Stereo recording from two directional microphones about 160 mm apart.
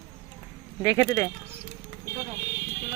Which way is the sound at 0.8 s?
15° left (ahead or behind).